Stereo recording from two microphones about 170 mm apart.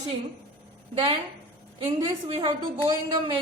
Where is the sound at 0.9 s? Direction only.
30° right (ahead or behind).